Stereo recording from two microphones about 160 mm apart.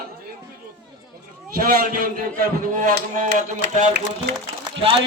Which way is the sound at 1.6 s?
65° right (ahead or behind).